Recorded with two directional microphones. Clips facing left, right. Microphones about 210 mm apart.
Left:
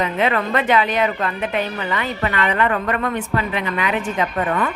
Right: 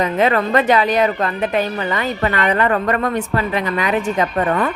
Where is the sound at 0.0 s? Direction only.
40° right (ahead or behind).